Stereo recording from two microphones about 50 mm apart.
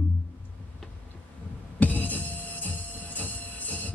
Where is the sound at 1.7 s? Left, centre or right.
Left.